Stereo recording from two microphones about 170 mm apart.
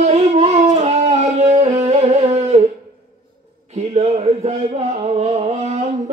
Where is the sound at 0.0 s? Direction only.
40° right (ahead or behind).